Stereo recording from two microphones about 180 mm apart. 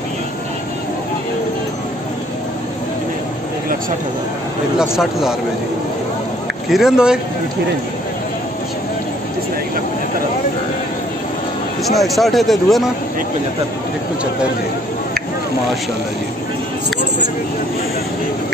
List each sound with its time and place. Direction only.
4.7 s speech: 5° right (ahead or behind)
6.7 s speech: 5° right (ahead or behind)
11.9 s speech: centre (ahead or behind)